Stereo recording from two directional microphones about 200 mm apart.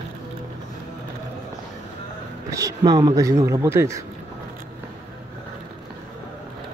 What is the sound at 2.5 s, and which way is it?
Speech, 15° right (ahead or behind).